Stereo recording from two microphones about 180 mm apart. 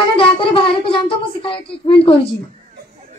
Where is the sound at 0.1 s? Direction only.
30° left (ahead or behind).